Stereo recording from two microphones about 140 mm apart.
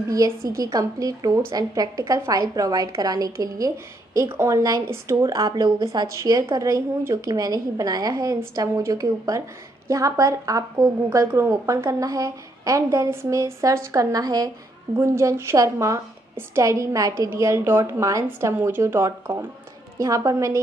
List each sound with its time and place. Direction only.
0.5 s a woman's voice: 25° right (ahead or behind)